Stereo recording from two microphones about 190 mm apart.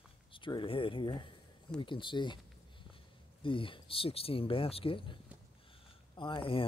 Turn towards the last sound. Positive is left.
turn(degrees=30)  # may be behind; listen again after turning